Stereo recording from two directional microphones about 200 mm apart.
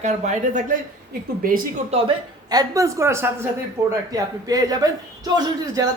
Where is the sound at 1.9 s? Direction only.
25° right (ahead or behind).